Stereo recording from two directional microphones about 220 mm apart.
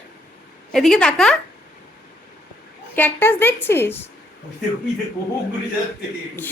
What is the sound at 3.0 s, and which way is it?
A woman's voice, 10° left (ahead or behind).